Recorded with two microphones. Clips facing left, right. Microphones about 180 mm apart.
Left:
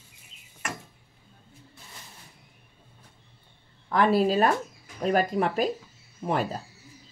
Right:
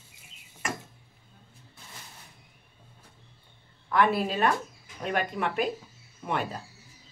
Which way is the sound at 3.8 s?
35° left (ahead or behind).